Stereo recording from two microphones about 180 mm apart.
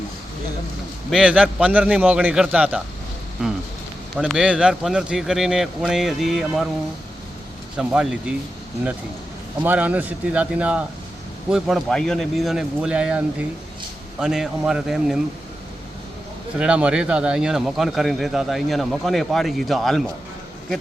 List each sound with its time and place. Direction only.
1.1 s a man's voice: 5° right (ahead or behind)
4.1 s speech: centre (ahead or behind)
7.8 s speech: 5° right (ahead or behind)
9.6 s a man's voice: 10° right (ahead or behind)
16.6 s speech: 5° right (ahead or behind)